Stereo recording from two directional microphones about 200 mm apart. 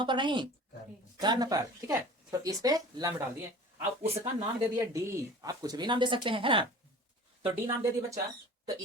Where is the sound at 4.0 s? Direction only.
30° right (ahead or behind).